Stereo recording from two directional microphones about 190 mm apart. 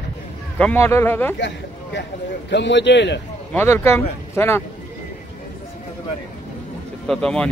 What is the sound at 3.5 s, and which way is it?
Speech, 15° left (ahead or behind).